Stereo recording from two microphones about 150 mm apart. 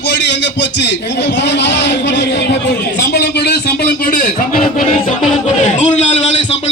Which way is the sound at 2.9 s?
90° left.